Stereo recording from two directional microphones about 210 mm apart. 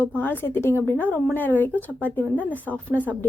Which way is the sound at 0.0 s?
10° left (ahead or behind).